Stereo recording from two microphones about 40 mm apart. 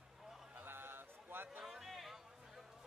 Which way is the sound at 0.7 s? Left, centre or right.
Right.